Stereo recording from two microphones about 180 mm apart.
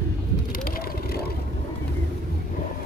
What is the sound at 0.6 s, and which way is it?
Vehicle, 55° left (ahead or behind).